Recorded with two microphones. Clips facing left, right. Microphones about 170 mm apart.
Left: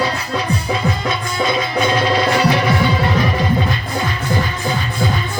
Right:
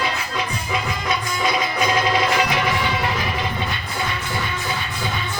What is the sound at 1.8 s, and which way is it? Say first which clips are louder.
Music: left 4 dB; 30° left (ahead or behind).